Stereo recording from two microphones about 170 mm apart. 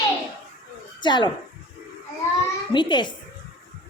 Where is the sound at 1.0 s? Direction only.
25° left (ahead or behind).